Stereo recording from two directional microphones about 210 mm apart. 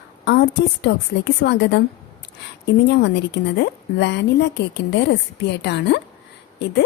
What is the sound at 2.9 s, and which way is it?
A woman's voice, 55° left (ahead or behind).